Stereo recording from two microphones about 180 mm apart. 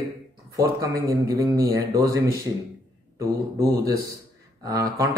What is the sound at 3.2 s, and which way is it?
A man's voice, 20° right (ahead or behind).